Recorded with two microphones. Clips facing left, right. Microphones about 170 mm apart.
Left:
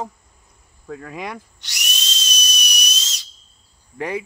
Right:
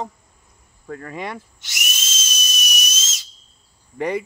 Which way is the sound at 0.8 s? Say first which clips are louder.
Right 1 dB; centre (ahead or behind).